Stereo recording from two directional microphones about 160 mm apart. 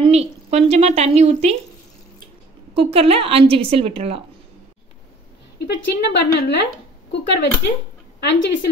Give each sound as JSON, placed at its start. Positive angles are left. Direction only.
{"t": 0.0, "sound": "a woman's voice", "side_deg": -40}
{"t": 2.7, "sound": "a woman's voice", "side_deg": -35}
{"t": 5.6, "sound": "speech", "side_deg": 90}